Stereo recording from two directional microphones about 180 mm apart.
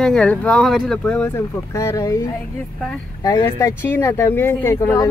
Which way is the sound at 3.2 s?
20° left (ahead or behind).